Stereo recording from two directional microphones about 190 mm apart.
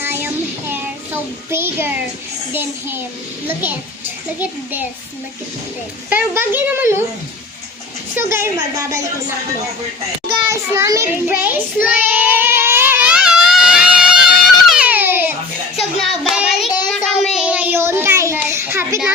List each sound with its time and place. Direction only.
0.0 s child singing: 10° right (ahead or behind)
0.7 s a child's voice: 10° right (ahead or behind)
6.1 s a child's voice: 10° right (ahead or behind)
8.1 s a child's voice: 15° right (ahead or behind)
10.5 s a child's voice: 15° right (ahead or behind)
11.9 s a sound: 10° right (ahead or behind)
15.8 s child singing: centre (ahead or behind)